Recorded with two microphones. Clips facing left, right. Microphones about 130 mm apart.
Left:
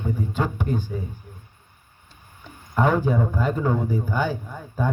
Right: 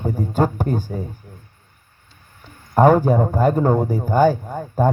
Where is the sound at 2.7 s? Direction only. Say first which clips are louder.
Right 7 dB; 45° right (ahead or behind).